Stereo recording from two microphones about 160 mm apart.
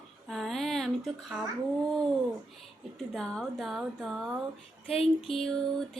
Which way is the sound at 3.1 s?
5° left (ahead or behind).